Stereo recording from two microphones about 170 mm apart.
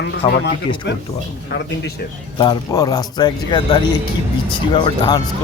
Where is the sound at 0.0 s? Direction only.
75° left (ahead or behind).